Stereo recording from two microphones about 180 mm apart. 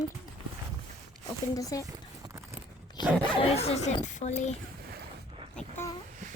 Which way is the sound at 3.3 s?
35° left (ahead or behind).